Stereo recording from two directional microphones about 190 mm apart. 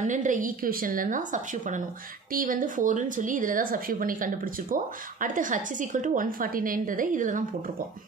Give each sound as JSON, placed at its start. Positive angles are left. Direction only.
{"t": 0.0, "sound": "a woman's voice", "side_deg": -40}